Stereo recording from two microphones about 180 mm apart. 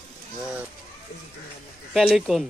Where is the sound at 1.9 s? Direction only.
Centre (ahead or behind).